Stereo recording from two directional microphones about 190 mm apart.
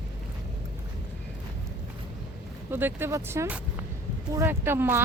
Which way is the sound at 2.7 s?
10° right (ahead or behind).